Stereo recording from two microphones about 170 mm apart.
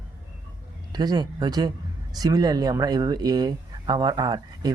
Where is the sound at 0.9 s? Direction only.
25° right (ahead or behind).